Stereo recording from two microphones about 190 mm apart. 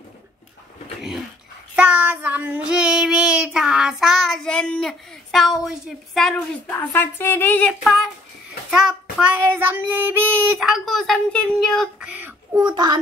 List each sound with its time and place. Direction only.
1.8 s child singing: 10° right (ahead or behind)
5.7 s a woman's voice: centre (ahead or behind)
8.6 s child singing: 5° right (ahead or behind)
9.1 s speech: 5° right (ahead or behind)
12.6 s a child's voice: 20° right (ahead or behind)